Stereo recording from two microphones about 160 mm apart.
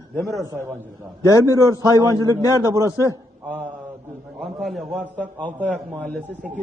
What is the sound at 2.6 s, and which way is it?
Speech, 20° right (ahead or behind).